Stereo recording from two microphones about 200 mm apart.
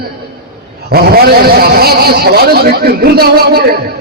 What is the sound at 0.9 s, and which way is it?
A man's voice, 50° right (ahead or behind).